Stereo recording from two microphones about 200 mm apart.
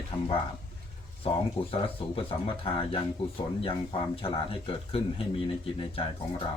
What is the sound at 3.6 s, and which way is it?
Speech, 25° left (ahead or behind).